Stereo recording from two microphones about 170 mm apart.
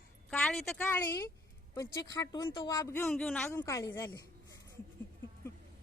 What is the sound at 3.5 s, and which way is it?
Speech, 15° left (ahead or behind).